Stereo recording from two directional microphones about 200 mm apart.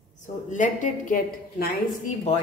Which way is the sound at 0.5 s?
40° left (ahead or behind).